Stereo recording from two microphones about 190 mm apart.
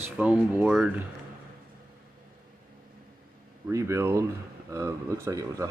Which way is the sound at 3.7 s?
15° right (ahead or behind).